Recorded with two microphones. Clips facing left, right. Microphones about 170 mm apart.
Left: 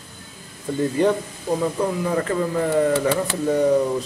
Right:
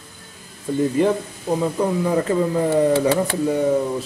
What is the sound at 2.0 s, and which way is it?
Speech, 20° right (ahead or behind).